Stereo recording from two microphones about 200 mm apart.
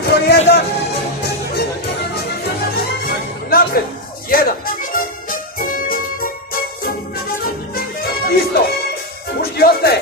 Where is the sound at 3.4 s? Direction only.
50° left (ahead or behind).